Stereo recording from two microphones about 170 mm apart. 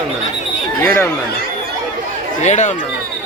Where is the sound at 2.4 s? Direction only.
45° left (ahead or behind).